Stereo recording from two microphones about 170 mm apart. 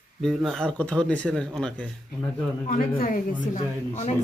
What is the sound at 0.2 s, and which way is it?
Speech, centre (ahead or behind).